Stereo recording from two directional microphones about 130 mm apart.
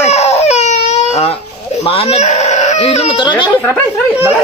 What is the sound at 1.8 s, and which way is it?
Speech, 50° left (ahead or behind).